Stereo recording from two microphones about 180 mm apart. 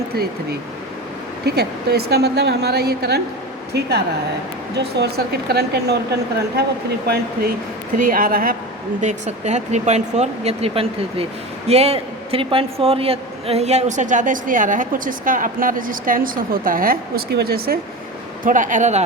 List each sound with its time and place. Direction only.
1.5 s a woman's voice: 65° right (ahead or behind)
7.9 s a man's voice: 50° right (ahead or behind)
9.0 s a man's voice: 40° right (ahead or behind); by 17.7 s 60° right (ahead or behind)
18.4 s a man's voice: 45° right (ahead or behind)